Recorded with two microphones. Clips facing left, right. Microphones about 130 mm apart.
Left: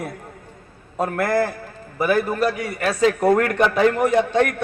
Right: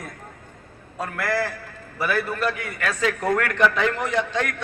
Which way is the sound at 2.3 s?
40° left (ahead or behind).